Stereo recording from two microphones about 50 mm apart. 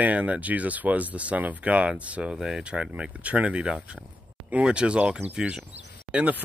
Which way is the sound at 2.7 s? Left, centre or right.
Right.